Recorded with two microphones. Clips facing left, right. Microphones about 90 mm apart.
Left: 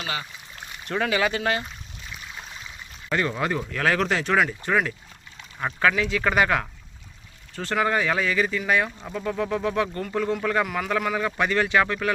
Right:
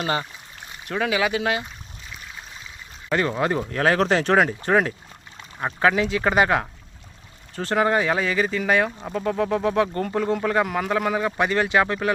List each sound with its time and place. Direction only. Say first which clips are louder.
0.0 s speech: right 6 dB; 40° right (ahead or behind)
0.9 s speech: right 1 dB; 5° right (ahead or behind)
3.1 s speech: right 3 dB; 25° right (ahead or behind)
9.1 s speech: right 3 dB; 40° right (ahead or behind)